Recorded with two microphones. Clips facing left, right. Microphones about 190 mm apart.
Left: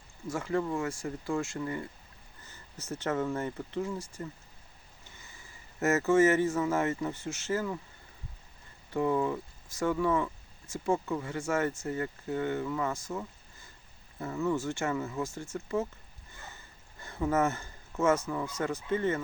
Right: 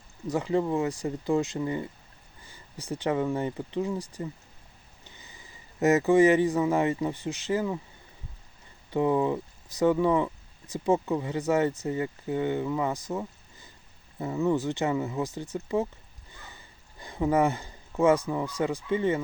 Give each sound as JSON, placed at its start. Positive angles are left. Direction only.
{"t": 0.3, "sound": "speech", "side_deg": -20}
{"t": 5.0, "sound": "speech", "side_deg": -20}
{"t": 8.9, "sound": "speech", "side_deg": -20}
{"t": 17.0, "sound": "speech", "side_deg": -15}